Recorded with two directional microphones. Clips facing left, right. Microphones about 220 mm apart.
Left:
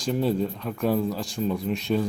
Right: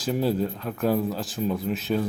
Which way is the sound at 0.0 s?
5° right (ahead or behind).